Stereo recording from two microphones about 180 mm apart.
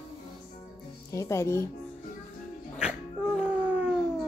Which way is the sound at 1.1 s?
15° left (ahead or behind).